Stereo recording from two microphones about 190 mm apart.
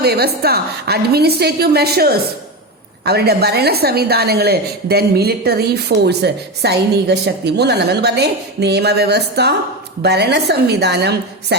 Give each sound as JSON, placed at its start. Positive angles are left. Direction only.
{"t": 0.0, "sound": "a woman's voice", "side_deg": -55}